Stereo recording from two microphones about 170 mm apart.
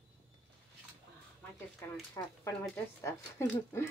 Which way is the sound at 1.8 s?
15° left (ahead or behind).